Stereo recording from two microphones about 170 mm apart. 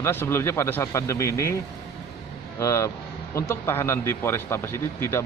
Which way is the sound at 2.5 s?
15° left (ahead or behind).